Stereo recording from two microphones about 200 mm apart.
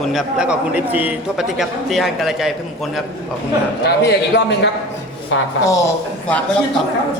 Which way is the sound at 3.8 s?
55° left (ahead or behind).